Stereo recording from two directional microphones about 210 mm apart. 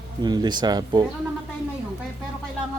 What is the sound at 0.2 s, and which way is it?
Speech, 20° right (ahead or behind).